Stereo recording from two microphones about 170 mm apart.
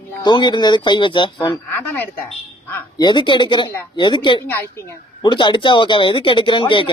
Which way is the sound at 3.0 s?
25° left (ahead or behind).